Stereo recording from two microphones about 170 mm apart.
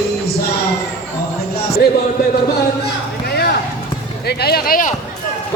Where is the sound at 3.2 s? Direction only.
65° left (ahead or behind).